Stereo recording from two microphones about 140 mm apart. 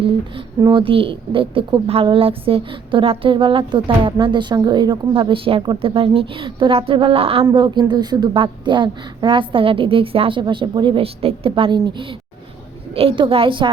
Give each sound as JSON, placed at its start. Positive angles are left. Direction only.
{"t": 0.6, "sound": "a woman's voice", "side_deg": -35}